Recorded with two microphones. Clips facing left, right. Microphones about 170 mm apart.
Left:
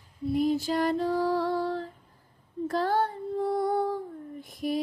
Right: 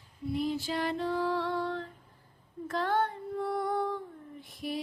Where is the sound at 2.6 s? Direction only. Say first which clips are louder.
Left 3 dB; 35° left (ahead or behind).